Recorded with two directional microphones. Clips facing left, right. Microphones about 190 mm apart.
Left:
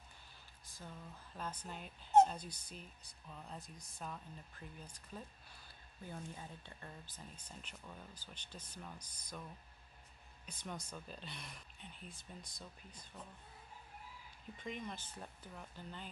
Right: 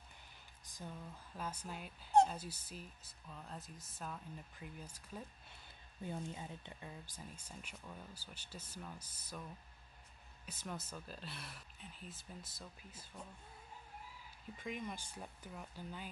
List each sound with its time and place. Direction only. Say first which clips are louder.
0.7 s a sound: right 3 dB; 15° right (ahead or behind)
1.3 s speech: right 1 dB; 10° right (ahead or behind)
6.0 s speech: right 4 dB; 20° right (ahead or behind)
14.6 s speech: right 1 dB; 5° right (ahead or behind)